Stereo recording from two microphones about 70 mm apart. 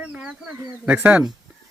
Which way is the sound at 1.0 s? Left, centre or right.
Right.